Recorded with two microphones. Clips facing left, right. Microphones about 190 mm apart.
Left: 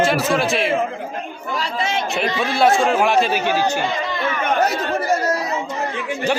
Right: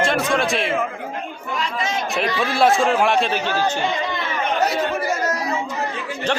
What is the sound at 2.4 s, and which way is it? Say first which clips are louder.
A man's voice: left 1 dB; centre (ahead or behind).